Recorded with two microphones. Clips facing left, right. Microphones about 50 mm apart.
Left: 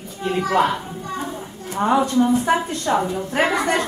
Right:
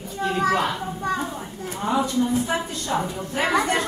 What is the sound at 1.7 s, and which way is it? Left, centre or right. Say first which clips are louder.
Speech: left 5 dB; left.